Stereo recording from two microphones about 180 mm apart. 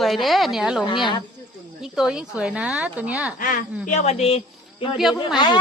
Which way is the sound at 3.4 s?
50° left (ahead or behind).